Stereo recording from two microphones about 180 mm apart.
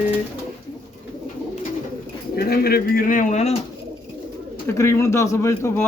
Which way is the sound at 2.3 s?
60° left (ahead or behind).